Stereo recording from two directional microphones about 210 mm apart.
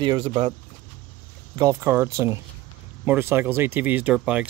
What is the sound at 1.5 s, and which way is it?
Speech, 15° right (ahead or behind).